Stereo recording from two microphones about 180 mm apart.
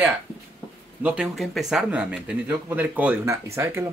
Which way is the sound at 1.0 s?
5° right (ahead or behind).